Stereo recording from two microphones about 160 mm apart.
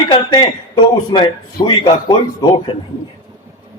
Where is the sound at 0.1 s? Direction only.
25° left (ahead or behind).